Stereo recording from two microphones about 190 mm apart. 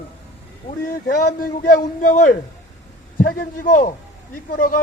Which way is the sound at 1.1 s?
50° left (ahead or behind).